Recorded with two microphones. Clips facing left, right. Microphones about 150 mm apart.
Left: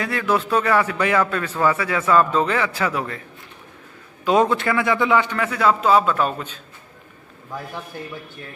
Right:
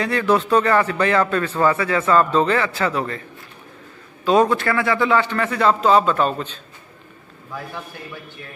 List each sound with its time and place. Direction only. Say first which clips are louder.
0.0 s a man's voice: right 3 dB; 5° left (ahead or behind)
4.2 s a man's voice: right 1 dB; 20° left (ahead or behind)
8.0 s a man's voice: left 4 dB; 30° left (ahead or behind)